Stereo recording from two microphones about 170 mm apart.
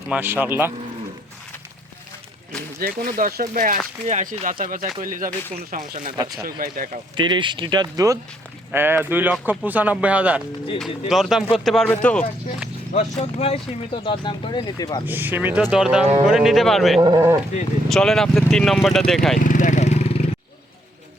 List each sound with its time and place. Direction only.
0.1 s speech: 10° right (ahead or behind)
2.8 s speech: 55° right (ahead or behind)
7.2 s speech: 25° right (ahead or behind); by 12.2 s 5° left (ahead or behind)
12.9 s speech: 35° left (ahead or behind)
15.0 s speech: 10° right (ahead or behind)
17.0 s speech: 25° right (ahead or behind)
17.8 s speech: centre (ahead or behind)
19.4 s lawn mower: 50° left (ahead or behind)